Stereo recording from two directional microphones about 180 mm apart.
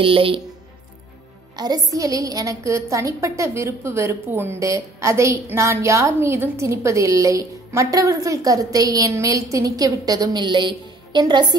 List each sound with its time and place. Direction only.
0.0 s speech: 30° right (ahead or behind)
1.6 s a woman's voice: 20° right (ahead or behind)